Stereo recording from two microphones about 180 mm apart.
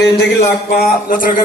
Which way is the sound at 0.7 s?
55° left (ahead or behind).